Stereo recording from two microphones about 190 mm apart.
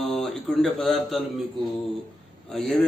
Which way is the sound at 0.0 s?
Centre (ahead or behind).